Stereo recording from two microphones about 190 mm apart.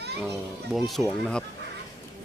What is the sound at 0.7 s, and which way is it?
Speech, centre (ahead or behind).